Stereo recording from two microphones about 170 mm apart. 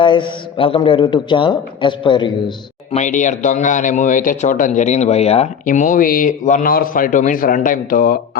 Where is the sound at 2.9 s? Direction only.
45° left (ahead or behind).